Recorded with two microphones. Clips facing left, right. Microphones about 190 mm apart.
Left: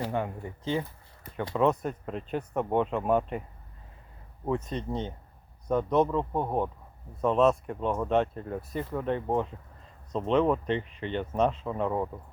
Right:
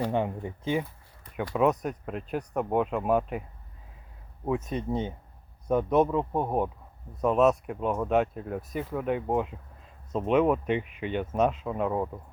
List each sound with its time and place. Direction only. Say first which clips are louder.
0.0 s speech: right 3 dB; 20° right (ahead or behind)
4.4 s speech: right 1 dB; 5° right (ahead or behind)